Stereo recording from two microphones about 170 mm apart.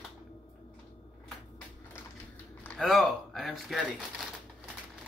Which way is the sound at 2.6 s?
5° left (ahead or behind).